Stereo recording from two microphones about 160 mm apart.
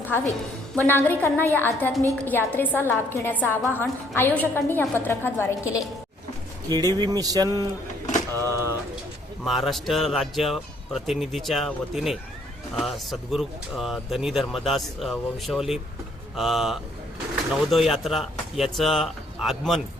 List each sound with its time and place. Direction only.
0.8 s a woman's voice: 15° left (ahead or behind)
6.7 s speech: 25° right (ahead or behind)
8.4 s pigeon: 15° right (ahead or behind)
9.4 s speech: centre (ahead or behind)